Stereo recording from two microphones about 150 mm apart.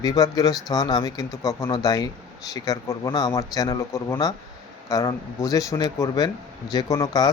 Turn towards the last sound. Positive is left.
turn(degrees=25)  # may be behind; listen again after turning